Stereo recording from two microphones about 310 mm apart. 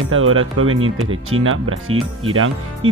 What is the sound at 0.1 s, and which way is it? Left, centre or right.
Speech, right.